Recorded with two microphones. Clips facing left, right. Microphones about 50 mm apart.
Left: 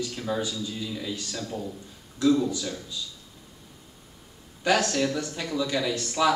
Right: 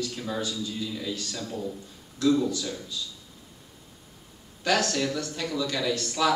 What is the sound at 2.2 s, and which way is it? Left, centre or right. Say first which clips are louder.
Speech: left 1 dB; left.